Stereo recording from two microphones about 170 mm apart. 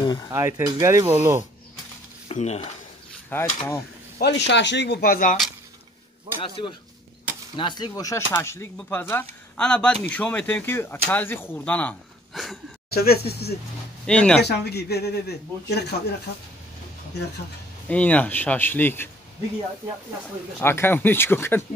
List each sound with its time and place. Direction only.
0.0 s a sound: 25° left (ahead or behind)
0.3 s speech: 15° right (ahead or behind)
2.2 s speech: 40° left (ahead or behind)
3.3 s a man's voice: 10° left (ahead or behind)
4.2 s speech: 90° left; by 5.4 s 55° left (ahead or behind)
6.4 s a man's voice: 30° left (ahead or behind); by 12.5 s 5° left (ahead or behind)
12.9 s speech: 65° left (ahead or behind)
14.0 s speech: 5° left (ahead or behind)
14.4 s speech: 75° left (ahead or behind)
17.8 s a man's voice: 10° left (ahead or behind)
20.6 s a man's voice: 15° left (ahead or behind)